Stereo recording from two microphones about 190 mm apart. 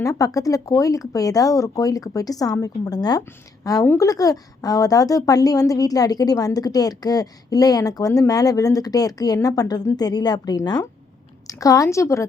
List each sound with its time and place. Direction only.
0.0 s a woman's voice: 20° left (ahead or behind)